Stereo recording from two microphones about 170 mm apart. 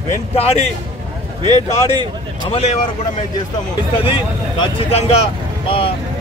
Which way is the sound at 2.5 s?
35° left (ahead or behind).